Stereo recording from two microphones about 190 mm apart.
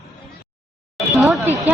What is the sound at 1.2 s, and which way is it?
Speech, 5° right (ahead or behind).